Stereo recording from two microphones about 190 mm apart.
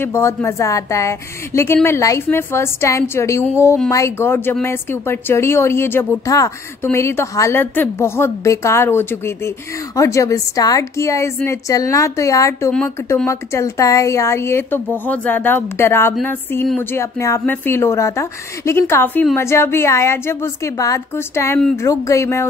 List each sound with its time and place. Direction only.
0.0 s speech: 10° left (ahead or behind)